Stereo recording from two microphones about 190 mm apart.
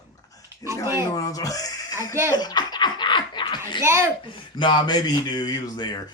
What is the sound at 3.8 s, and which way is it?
Speech, 15° right (ahead or behind).